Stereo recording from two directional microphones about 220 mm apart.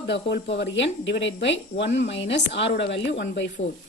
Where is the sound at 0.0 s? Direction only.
50° left (ahead or behind).